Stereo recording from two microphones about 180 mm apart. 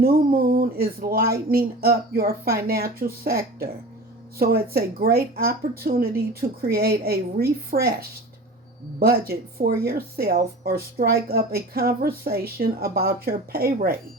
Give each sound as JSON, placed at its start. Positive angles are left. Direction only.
{"t": 0.0, "sound": "speech", "side_deg": -55}
{"t": 9.0, "sound": "speech", "side_deg": -60}